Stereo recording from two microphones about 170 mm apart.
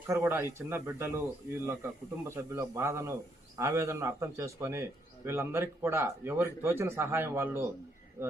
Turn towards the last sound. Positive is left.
turn(degrees=-15)  # may be behind; listen again after turning